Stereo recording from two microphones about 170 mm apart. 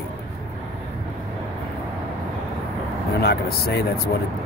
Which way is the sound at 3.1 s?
70° left (ahead or behind).